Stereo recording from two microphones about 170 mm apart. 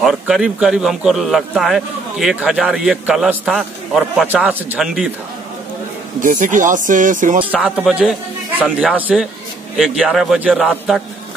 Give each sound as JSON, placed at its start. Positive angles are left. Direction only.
{"t": 0.0, "sound": "a man's voice", "side_deg": -5}
{"t": 6.1, "sound": "speech", "side_deg": -50}
{"t": 7.4, "sound": "a man's voice", "side_deg": -10}